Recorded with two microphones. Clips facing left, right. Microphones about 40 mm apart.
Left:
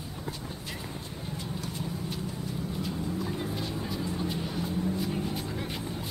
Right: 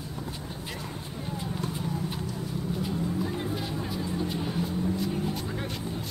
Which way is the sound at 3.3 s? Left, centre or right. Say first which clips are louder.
Right 2 dB; centre.